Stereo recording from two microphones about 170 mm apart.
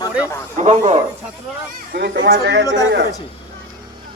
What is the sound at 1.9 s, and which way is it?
Speech, 70° right (ahead or behind).